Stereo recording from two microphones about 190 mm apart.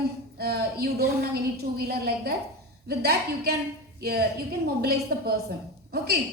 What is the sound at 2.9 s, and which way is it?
A woman's voice, 55° right (ahead or behind).